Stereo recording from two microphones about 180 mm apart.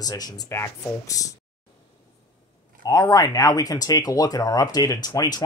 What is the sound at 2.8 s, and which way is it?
Speech, 20° left (ahead or behind).